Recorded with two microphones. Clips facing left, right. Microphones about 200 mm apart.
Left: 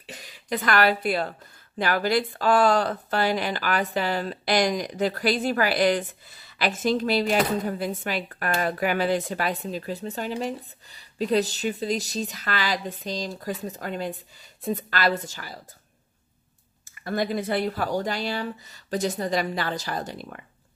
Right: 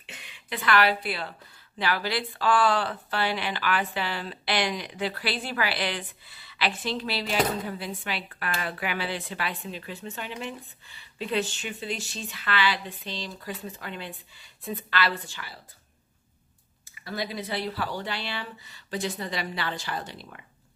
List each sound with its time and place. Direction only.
0.0 s speech: 40° left (ahead or behind)
16.9 s speech: 50° left (ahead or behind)